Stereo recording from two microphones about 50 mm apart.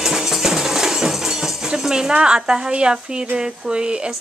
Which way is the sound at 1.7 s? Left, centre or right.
Centre.